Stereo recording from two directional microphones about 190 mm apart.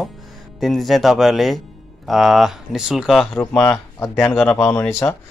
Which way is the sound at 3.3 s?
10° left (ahead or behind).